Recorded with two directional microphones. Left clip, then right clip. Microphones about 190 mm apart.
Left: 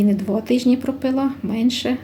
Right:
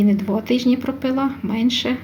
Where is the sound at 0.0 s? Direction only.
Centre (ahead or behind).